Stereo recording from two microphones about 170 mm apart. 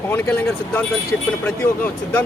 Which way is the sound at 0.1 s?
10° left (ahead or behind).